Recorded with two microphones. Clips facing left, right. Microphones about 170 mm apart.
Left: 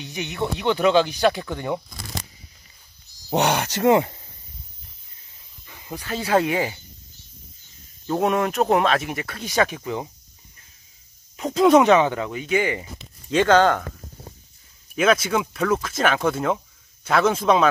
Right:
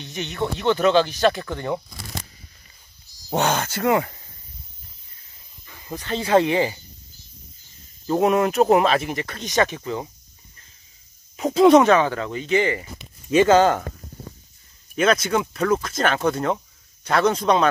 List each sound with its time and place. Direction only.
0.0 s speech: 15° left (ahead or behind)
3.3 s speech: 15° left (ahead or behind)
5.7 s speech: 10° left (ahead or behind)
8.1 s speech: centre (ahead or behind)
11.3 s speech: centre (ahead or behind)
11.8 s speech: 20° left (ahead or behind)
12.3 s speech: 10° left (ahead or behind)
13.0 s speech: 10° right (ahead or behind)
15.0 s speech: centre (ahead or behind)